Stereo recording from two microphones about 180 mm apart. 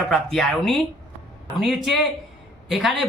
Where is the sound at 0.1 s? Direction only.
Centre (ahead or behind).